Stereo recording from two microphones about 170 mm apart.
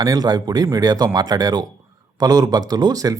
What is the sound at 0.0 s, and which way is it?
Speech, 20° right (ahead or behind).